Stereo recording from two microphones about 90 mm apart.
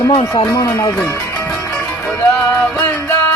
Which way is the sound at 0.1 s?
90° left.